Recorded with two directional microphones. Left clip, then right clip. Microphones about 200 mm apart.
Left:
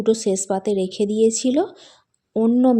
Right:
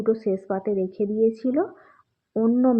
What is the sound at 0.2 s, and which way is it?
A woman's voice, 50° left (ahead or behind).